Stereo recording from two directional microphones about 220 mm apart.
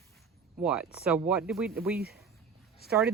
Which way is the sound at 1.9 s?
45° right (ahead or behind).